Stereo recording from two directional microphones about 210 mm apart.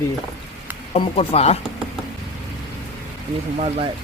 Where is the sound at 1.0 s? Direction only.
30° left (ahead or behind).